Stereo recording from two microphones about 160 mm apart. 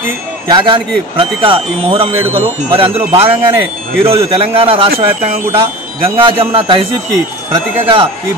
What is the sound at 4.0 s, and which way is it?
Speech, 35° right (ahead or behind).